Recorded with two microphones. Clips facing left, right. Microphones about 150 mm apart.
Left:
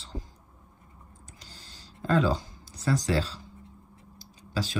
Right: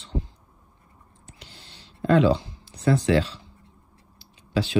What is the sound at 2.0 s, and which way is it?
Speech, 40° left (ahead or behind).